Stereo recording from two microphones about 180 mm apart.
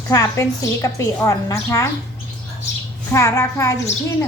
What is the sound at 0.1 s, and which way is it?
A woman's voice, 20° left (ahead or behind).